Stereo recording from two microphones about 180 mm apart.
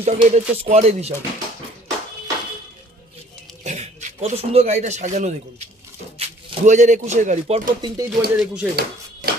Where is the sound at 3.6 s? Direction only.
40° right (ahead or behind).